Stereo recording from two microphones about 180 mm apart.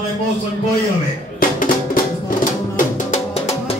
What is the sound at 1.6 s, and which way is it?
Music, 50° left (ahead or behind).